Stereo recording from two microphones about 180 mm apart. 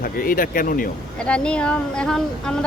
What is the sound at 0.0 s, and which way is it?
Speech, 50° left (ahead or behind).